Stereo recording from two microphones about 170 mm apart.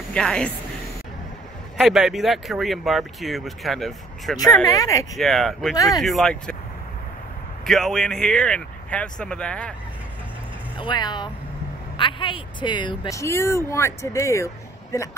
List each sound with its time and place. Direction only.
0.1 s a woman's voice: 5° left (ahead or behind)
1.8 s speech: centre (ahead or behind)
4.6 s speech: 20° left (ahead or behind)
5.1 s speech: centre (ahead or behind)
7.6 s speech: centre (ahead or behind)
10.8 s speech: 25° left (ahead or behind)